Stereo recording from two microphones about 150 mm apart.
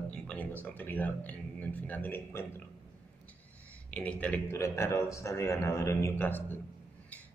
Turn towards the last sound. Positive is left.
turn(degrees=15)  # may be behind; listen again after turning